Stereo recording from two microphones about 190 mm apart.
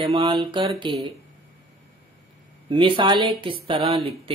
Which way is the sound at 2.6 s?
25° right (ahead or behind).